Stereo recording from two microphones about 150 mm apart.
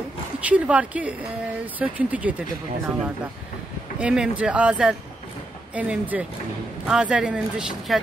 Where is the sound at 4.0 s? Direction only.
5° right (ahead or behind).